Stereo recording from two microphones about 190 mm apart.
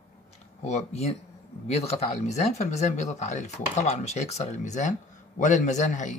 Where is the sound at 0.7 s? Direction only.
35° left (ahead or behind).